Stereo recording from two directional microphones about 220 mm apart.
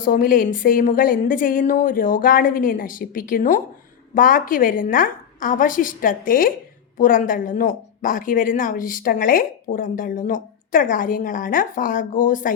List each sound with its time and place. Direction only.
0.0 s speech: 40° left (ahead or behind)